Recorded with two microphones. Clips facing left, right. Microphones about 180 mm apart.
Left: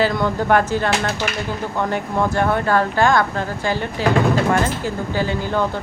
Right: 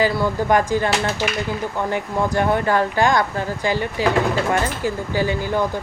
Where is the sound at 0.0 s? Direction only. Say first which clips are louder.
Even; 10° right (ahead or behind).